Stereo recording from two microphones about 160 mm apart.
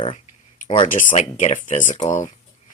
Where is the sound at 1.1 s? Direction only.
45° left (ahead or behind).